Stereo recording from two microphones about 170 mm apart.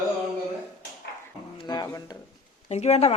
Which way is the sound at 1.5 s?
25° left (ahead or behind).